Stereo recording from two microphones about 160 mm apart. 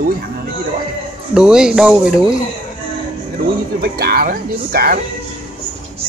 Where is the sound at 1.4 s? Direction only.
5° right (ahead or behind).